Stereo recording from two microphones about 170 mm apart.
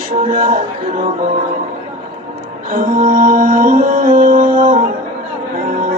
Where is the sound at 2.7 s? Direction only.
55° right (ahead or behind).